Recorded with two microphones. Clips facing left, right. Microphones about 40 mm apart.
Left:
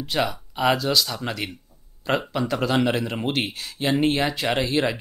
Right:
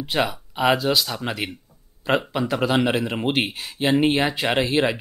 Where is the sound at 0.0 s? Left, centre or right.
Centre.